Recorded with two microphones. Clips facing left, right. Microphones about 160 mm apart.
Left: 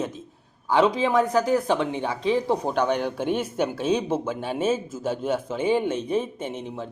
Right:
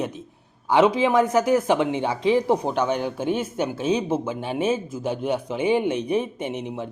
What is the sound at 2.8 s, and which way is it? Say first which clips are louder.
A man's voice: even; 10° right (ahead or behind).